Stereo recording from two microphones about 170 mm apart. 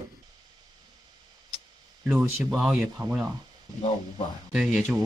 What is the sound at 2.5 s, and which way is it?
Speech, centre (ahead or behind).